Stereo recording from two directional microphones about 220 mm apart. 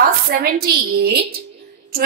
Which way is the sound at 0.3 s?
40° right (ahead or behind).